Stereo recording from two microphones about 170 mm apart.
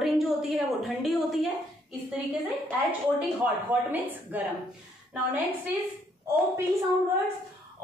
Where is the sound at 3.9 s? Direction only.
10° right (ahead or behind).